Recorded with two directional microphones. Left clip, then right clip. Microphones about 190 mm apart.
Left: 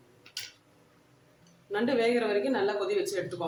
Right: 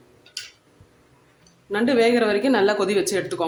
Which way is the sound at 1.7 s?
30° right (ahead or behind).